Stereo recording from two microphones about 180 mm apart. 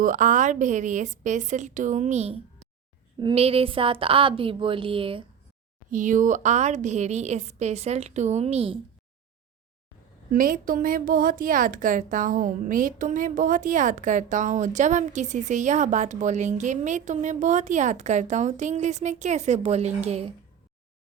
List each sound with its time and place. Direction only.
0.0 s a woman's voice: 45° right (ahead or behind); by 5.2 s 30° right (ahead or behind)
5.9 s a woman's voice: 45° right (ahead or behind)
10.3 s a woman's voice: 50° right (ahead or behind)